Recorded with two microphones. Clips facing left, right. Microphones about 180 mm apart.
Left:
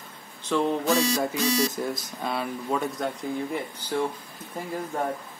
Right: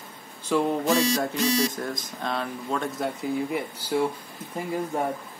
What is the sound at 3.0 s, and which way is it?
Speech, 5° right (ahead or behind).